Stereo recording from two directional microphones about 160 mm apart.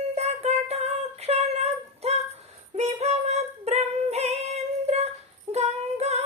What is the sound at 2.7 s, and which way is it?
Female singing, 45° right (ahead or behind).